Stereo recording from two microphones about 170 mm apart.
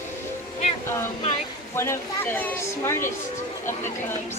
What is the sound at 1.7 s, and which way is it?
Speech, 15° left (ahead or behind).